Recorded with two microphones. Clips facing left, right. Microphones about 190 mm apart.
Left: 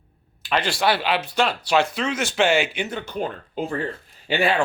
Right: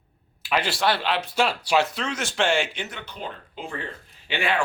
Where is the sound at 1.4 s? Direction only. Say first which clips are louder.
Left 1 dB; 5° right (ahead or behind).